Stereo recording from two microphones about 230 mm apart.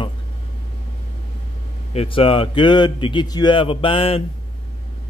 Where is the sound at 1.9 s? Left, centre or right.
Left.